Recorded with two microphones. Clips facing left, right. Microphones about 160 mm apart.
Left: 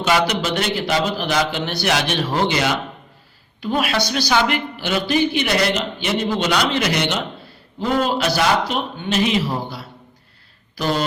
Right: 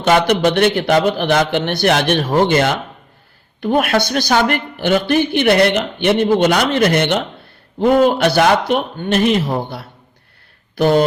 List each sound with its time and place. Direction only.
0.0 s a man's voice: 55° right (ahead or behind)